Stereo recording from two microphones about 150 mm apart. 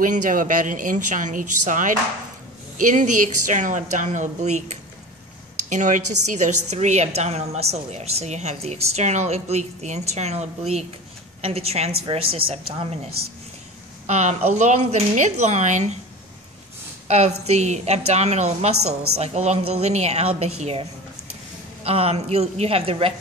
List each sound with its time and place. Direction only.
0.0 s a woman's voice: 60° right (ahead or behind); by 12.5 s 40° right (ahead or behind)
14.0 s a woman's voice: 50° right (ahead or behind)
17.1 s a woman's voice: 45° right (ahead or behind)
21.8 s a woman's voice: 40° right (ahead or behind)